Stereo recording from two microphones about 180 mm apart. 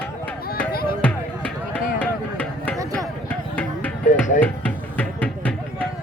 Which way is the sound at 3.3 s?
10° left (ahead or behind).